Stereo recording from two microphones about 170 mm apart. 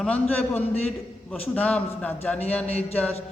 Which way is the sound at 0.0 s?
10° left (ahead or behind).